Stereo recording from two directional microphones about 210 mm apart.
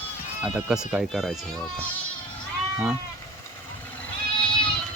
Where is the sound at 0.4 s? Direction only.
Centre (ahead or behind).